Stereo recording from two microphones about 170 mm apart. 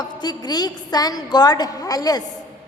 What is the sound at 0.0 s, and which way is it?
A woman's voice, 25° left (ahead or behind).